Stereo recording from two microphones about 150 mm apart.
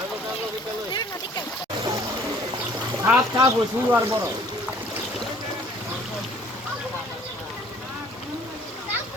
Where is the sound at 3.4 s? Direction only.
20° right (ahead or behind).